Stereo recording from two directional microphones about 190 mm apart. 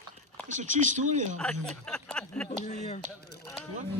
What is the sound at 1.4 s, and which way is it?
Speech, 5° left (ahead or behind).